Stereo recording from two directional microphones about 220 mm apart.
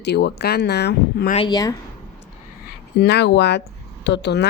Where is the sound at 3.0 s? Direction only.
50° left (ahead or behind).